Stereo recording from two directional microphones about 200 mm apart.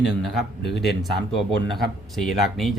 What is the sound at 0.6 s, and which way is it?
Speech, 55° left (ahead or behind).